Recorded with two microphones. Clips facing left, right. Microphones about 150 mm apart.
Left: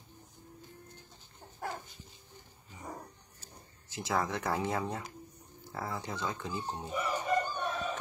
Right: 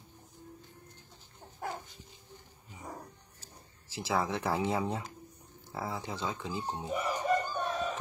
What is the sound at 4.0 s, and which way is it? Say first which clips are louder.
Speech: right 1 dB; 5° right (ahead or behind).